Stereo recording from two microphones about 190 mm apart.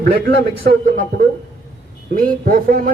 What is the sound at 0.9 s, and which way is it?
A man's voice, 45° right (ahead or behind).